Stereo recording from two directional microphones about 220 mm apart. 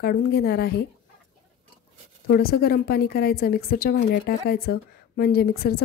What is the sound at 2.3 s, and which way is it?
A woman's voice, 45° left (ahead or behind).